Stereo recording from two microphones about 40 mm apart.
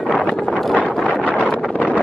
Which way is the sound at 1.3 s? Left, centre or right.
Right.